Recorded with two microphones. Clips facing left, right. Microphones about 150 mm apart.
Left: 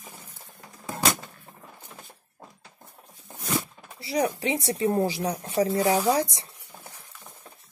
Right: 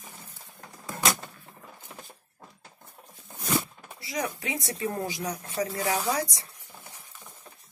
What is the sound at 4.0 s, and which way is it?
A woman's voice, 30° left (ahead or behind).